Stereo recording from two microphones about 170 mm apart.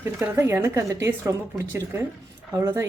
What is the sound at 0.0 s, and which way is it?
A woman's voice, 15° right (ahead or behind).